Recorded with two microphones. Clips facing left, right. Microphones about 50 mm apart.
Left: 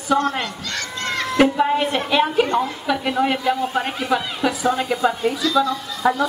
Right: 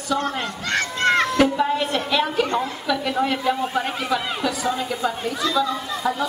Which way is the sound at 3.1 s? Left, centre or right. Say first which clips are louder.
Left 3 dB; centre.